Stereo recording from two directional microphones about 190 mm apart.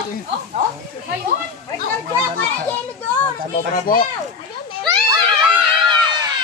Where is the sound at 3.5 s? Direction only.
50° left (ahead or behind).